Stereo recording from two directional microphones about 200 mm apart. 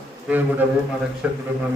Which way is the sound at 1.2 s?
5° right (ahead or behind).